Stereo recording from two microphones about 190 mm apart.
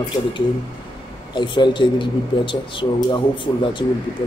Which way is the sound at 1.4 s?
25° left (ahead or behind).